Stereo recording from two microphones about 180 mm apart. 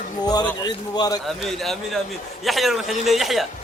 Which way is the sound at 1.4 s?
Centre (ahead or behind).